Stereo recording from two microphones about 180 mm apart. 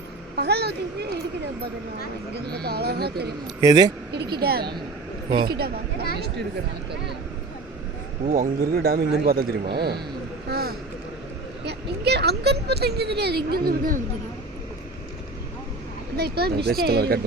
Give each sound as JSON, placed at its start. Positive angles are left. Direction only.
{"t": 0.3, "sound": "vehicle", "side_deg": -65}
{"t": 2.3, "sound": "speech", "side_deg": -65}
{"t": 3.6, "sound": "speech", "side_deg": -20}
{"t": 4.1, "sound": "speech", "side_deg": -65}
{"t": 8.2, "sound": "speech", "side_deg": -55}
{"t": 10.5, "sound": "vehicle", "side_deg": -60}
{"t": 11.6, "sound": "speech", "side_deg": -65}
{"t": 16.1, "sound": "speech", "side_deg": -60}